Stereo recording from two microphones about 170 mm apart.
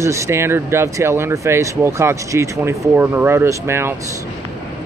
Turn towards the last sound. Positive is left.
turn(degrees=-15)  # may be behind; listen again after turning